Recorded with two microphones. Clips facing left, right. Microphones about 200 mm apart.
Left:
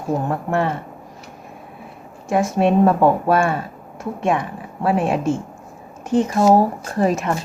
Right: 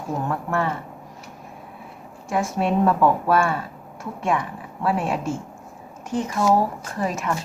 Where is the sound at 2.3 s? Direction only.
20° left (ahead or behind).